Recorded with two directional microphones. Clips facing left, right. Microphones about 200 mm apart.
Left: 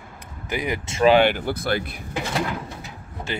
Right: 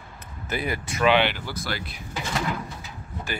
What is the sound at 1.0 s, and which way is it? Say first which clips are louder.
Speech: left 5 dB; 45° left (ahead or behind).